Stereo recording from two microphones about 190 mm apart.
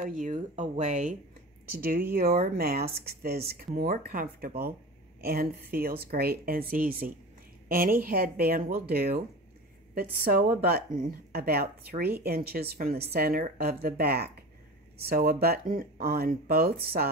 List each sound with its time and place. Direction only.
0.0 s speech: 45° right (ahead or behind)
1.7 s a woman's voice: 50° right (ahead or behind)